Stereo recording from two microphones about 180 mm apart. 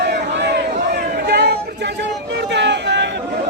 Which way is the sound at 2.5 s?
75° right (ahead or behind).